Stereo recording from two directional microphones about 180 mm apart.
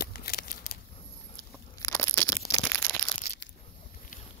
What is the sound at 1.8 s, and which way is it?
Crunch, 15° left (ahead or behind).